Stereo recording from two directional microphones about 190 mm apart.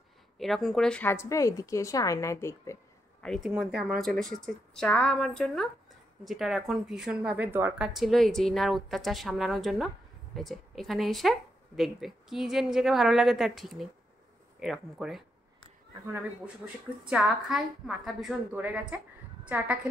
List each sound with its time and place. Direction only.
0.4 s a woman's voice: centre (ahead or behind)
3.2 s a woman's voice: centre (ahead or behind)
17.0 s a woman's voice: 5° right (ahead or behind)